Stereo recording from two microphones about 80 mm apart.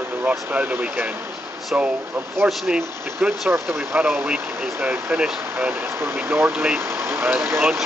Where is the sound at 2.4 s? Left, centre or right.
Centre.